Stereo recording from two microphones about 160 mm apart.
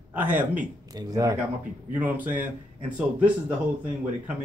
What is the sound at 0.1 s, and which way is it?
Speech, 10° right (ahead or behind).